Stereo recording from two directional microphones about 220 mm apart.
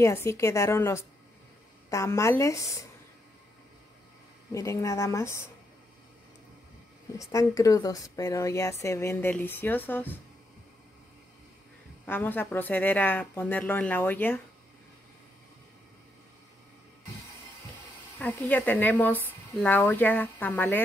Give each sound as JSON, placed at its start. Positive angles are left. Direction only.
{"t": 0.0, "sound": "speech", "side_deg": 10}
{"t": 4.5, "sound": "speech", "side_deg": 15}
{"t": 7.2, "sound": "speech", "side_deg": 15}
{"t": 12.1, "sound": "speech", "side_deg": 10}
{"t": 18.2, "sound": "speech", "side_deg": 5}